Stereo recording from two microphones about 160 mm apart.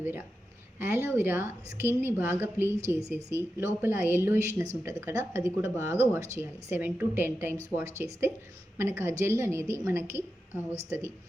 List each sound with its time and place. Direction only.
0.0 s a woman's voice: 15° right (ahead or behind)